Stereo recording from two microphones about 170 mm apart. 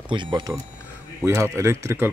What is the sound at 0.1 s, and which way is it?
Speech, 30° right (ahead or behind).